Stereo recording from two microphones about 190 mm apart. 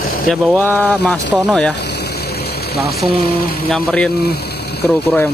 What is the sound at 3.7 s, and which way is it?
Speech, 5° left (ahead or behind).